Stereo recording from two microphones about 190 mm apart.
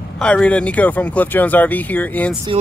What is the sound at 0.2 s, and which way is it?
Speech, 5° left (ahead or behind).